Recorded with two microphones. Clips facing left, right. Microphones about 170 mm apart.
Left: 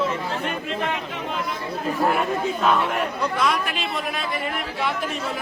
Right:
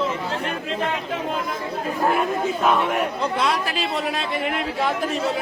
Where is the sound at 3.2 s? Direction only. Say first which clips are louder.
Even; 30° right (ahead or behind).